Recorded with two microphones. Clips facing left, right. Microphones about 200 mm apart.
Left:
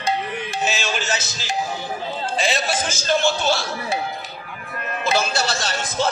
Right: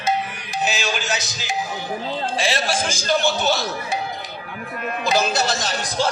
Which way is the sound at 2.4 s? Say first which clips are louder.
Left 1 dB; 10° right (ahead or behind).